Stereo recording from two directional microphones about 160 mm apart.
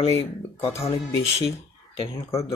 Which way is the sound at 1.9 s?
35° left (ahead or behind).